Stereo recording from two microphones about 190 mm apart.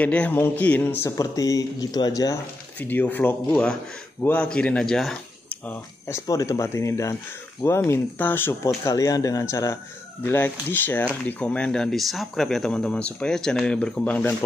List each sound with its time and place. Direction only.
0.0 s speech: 5° left (ahead or behind)